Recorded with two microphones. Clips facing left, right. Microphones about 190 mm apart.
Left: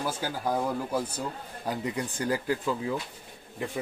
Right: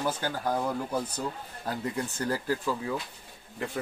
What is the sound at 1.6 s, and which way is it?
A man's voice, 15° left (ahead or behind).